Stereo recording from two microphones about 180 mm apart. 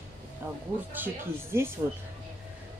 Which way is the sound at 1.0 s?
10° right (ahead or behind).